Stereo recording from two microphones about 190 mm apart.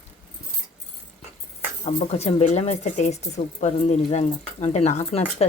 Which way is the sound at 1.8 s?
35° left (ahead or behind).